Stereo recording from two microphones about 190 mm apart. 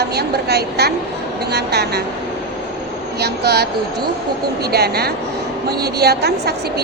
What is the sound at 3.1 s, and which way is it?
Speech, 60° right (ahead or behind).